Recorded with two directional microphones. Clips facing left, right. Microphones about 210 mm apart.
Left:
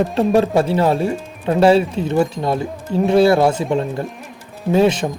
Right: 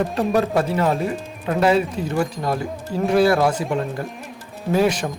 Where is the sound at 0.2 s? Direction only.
30° left (ahead or behind).